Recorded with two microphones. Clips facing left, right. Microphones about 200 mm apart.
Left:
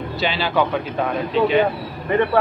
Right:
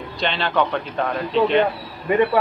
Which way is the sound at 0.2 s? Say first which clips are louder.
Left 1 dB; 5° left (ahead or behind).